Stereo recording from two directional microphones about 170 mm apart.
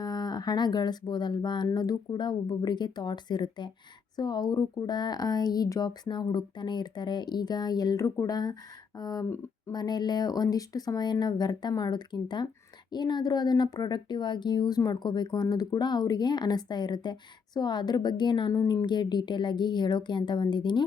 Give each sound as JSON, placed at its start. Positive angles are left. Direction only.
{"t": 0.0, "sound": "speech", "side_deg": 25}